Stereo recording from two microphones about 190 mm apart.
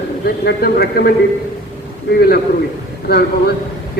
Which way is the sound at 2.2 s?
55° left (ahead or behind).